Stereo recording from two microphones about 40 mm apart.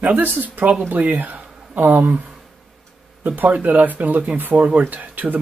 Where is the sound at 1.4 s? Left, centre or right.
Centre.